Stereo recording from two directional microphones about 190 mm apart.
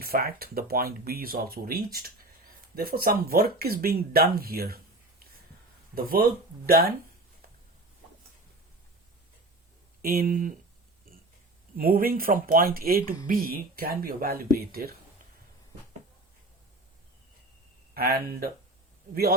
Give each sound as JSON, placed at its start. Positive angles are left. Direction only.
{"t": 0.0, "sound": "speech", "side_deg": -50}
{"t": 5.9, "sound": "speech", "side_deg": -50}
{"t": 10.0, "sound": "speech", "side_deg": -50}
{"t": 11.8, "sound": "speech", "side_deg": -50}
{"t": 17.9, "sound": "speech", "side_deg": -50}